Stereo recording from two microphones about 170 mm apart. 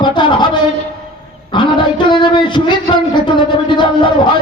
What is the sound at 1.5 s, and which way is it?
Speech, 30° left (ahead or behind).